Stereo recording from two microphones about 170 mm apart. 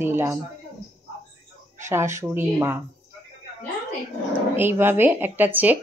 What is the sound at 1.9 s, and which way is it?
Speech, 15° right (ahead or behind).